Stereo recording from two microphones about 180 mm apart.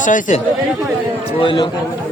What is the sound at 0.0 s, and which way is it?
Speech, 45° left (ahead or behind).